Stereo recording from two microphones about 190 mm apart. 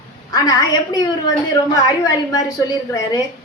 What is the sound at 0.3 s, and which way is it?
Speech, 20° left (ahead or behind).